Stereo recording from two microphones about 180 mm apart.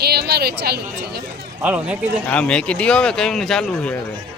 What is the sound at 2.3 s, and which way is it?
A man's voice, 5° left (ahead or behind).